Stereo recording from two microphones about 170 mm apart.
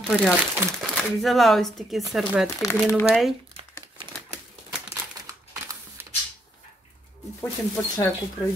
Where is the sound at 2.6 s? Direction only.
15° left (ahead or behind).